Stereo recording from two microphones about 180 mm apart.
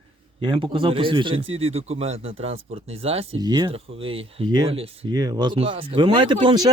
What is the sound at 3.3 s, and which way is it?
Speech, 25° right (ahead or behind).